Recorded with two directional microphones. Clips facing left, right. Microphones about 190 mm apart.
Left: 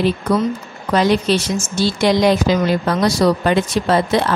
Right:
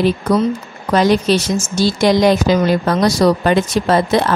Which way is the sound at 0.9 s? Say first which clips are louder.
Right 2 dB; 40° right (ahead or behind).